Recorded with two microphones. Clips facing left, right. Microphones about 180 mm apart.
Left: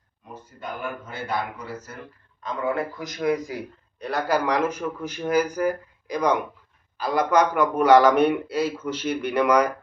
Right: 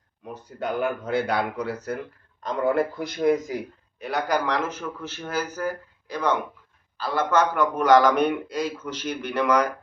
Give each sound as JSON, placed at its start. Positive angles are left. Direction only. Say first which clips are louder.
{"t": 0.6, "sound": "a man's voice", "louder": "right 7 dB", "side_deg": -75}
{"t": 2.4, "sound": "a man's voice", "louder": "right 4 dB", "side_deg": -40}
{"t": 4.0, "sound": "a man's voice", "louder": "left 1 dB", "side_deg": 5}